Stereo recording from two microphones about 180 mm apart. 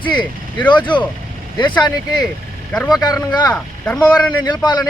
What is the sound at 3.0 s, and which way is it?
Speech, 20° left (ahead or behind).